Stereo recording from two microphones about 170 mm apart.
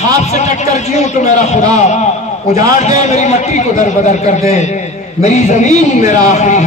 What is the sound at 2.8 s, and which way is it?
A man's voice, 45° left (ahead or behind).